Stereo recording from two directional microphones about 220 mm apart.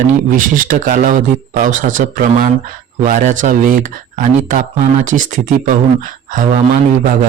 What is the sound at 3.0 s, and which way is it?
Speech, 35° right (ahead or behind).